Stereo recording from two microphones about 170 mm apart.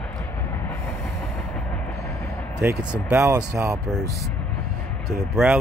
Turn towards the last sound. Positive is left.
turn(degrees=-5)  # may be behind; listen again after turning